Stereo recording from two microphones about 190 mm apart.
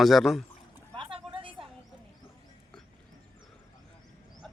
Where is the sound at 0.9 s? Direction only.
25° right (ahead or behind).